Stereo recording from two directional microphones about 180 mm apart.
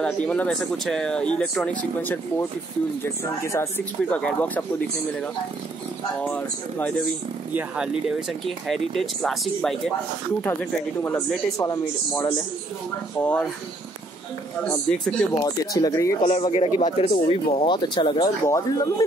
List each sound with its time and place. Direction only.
0.0 s speech: 5° left (ahead or behind)
3.5 s speech: 10° left (ahead or behind)
6.2 s speech: 10° left (ahead or behind)
7.5 s speech: 5° right (ahead or behind); by 12.4 s 20° left (ahead or behind)
13.2 s speech: 5° left (ahead or behind)
14.9 s speech: 5° left (ahead or behind)
15.4 s speech: 20° left (ahead or behind)
16.3 s speech: 35° left (ahead or behind)